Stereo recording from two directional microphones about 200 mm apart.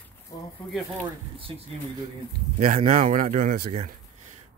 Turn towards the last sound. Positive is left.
turn(degrees=-40)  # may be behind; listen again after turning